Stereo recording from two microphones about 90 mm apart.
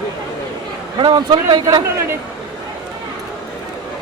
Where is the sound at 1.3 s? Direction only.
55° right (ahead or behind).